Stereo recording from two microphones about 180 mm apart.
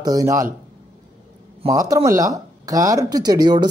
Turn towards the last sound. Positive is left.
turn(degrees=-20)  # may be behind; listen again after turning